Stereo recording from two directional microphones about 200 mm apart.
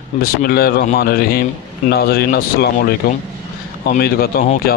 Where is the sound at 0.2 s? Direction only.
50° left (ahead or behind).